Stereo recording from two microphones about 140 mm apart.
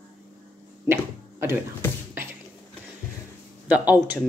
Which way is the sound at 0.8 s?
20° right (ahead or behind).